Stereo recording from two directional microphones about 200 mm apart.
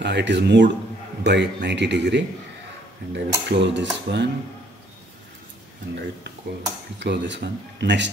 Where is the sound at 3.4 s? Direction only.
60° right (ahead or behind).